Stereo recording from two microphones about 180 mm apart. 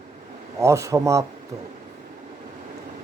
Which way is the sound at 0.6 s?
15° right (ahead or behind).